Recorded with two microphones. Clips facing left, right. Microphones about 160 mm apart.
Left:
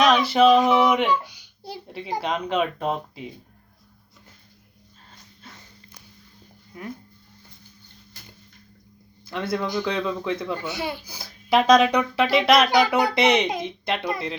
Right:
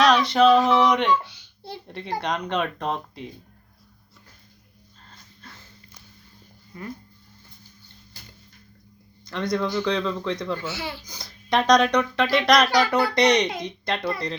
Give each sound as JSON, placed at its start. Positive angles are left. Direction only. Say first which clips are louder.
{"t": 0.0, "sound": "speech", "louder": "even", "side_deg": 5}
{"t": 9.2, "sound": "speech", "louder": "right 1 dB", "side_deg": 5}
{"t": 12.8, "sound": "speech", "louder": "left 1 dB", "side_deg": 15}
{"t": 13.1, "sound": "speech", "louder": "even", "side_deg": 5}